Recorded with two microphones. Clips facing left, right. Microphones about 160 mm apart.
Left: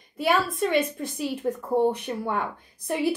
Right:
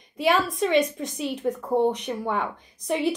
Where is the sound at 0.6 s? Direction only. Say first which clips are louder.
Right 2 dB; centre (ahead or behind).